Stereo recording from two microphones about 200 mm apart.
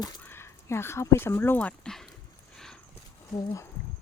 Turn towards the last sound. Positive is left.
turn(degrees=15)  # may be behind; listen again after turning